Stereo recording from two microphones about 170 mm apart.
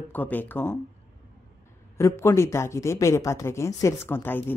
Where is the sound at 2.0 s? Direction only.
15° left (ahead or behind).